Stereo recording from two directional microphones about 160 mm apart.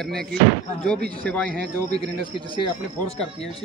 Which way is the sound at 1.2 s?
5° left (ahead or behind).